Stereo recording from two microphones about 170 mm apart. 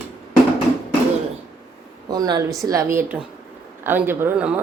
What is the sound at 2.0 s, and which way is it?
Speech, 25° right (ahead or behind).